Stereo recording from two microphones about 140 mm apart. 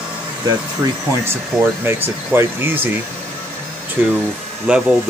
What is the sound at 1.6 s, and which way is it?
Speech, 15° right (ahead or behind).